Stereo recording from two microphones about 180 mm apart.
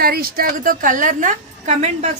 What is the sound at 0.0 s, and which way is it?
A woman's voice, 55° right (ahead or behind).